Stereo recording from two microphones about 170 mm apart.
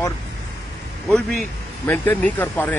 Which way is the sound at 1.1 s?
5° left (ahead or behind).